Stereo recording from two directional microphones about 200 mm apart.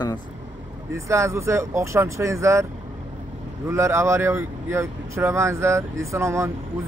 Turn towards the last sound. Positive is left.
turn(degrees=-15)  # may be behind; listen again after turning